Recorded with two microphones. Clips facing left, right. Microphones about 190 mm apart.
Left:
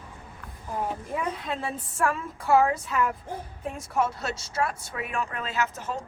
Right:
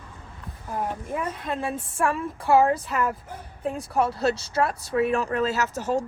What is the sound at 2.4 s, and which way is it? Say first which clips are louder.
Speech: right 2 dB; 30° right (ahead or behind).